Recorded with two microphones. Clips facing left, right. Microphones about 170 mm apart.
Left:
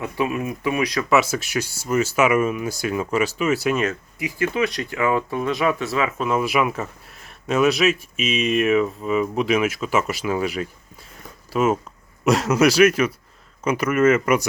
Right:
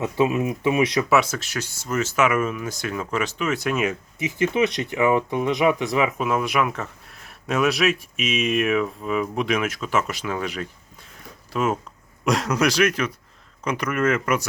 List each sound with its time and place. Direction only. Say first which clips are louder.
0.0 s speech: right 3 dB; 25° right (ahead or behind)
1.1 s speech: left 2 dB; 5° left (ahead or behind)
4.2 s speech: right 1 dB; 20° right (ahead or behind)
6.2 s speech: left 2 dB; centre (ahead or behind)